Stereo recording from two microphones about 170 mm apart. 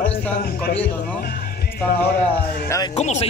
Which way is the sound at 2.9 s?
40° left (ahead or behind).